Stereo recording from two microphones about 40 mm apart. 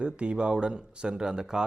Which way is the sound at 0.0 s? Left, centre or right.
Right.